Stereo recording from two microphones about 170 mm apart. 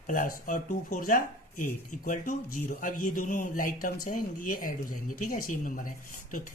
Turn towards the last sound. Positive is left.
turn(degrees=55)  # may be behind; listen again after turning